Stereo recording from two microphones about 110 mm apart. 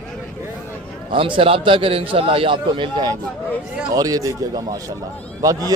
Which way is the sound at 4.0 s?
35° right (ahead or behind).